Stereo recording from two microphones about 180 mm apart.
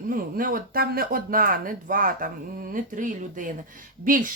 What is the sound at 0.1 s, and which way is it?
Speech, 50° right (ahead or behind).